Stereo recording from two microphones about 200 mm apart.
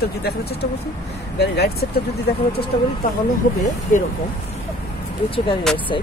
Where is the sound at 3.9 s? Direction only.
40° left (ahead or behind).